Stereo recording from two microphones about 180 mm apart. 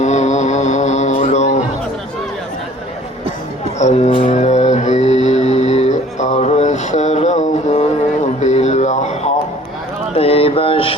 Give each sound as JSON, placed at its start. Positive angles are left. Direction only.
{"t": 0.0, "sound": "mantra", "side_deg": 40}
{"t": 3.8, "sound": "speech", "side_deg": 40}
{"t": 4.3, "sound": "music", "side_deg": 40}
{"t": 8.4, "sound": "a sound", "side_deg": 40}
{"t": 10.2, "sound": "mantra", "side_deg": 35}